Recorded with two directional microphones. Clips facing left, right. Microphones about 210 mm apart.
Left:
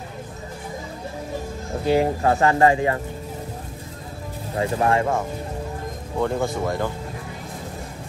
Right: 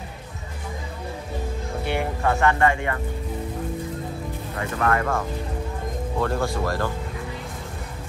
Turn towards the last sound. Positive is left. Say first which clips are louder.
# left 1 dB
turn(degrees=20)  # may be behind; listen again after turning